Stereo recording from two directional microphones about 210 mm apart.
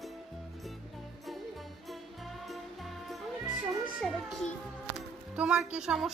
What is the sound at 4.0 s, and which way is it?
Speech, centre (ahead or behind).